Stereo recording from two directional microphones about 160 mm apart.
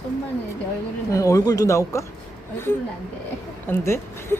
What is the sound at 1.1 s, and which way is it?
Speech, 20° left (ahead or behind).